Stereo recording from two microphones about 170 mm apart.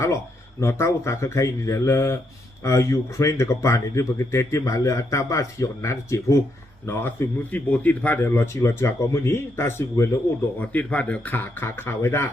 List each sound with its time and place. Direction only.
0.6 s speech: 15° left (ahead or behind)